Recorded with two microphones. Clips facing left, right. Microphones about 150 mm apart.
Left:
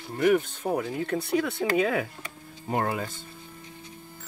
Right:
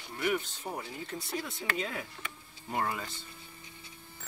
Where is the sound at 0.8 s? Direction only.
65° left (ahead or behind).